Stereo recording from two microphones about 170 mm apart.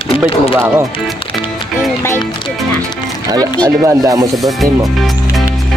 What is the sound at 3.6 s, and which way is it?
Music, 20° right (ahead or behind).